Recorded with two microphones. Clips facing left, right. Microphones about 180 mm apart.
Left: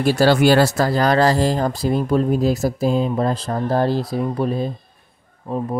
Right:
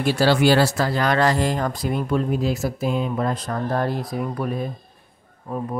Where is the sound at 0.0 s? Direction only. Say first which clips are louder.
Left 3 dB; 45° left (ahead or behind).